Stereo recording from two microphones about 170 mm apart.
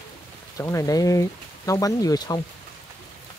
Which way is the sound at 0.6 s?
20° left (ahead or behind).